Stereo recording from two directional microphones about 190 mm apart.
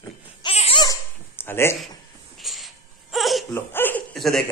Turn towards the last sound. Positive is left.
turn(degrees=0)  # may be behind; listen again after turning